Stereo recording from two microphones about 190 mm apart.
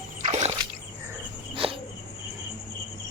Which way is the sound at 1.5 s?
25° right (ahead or behind).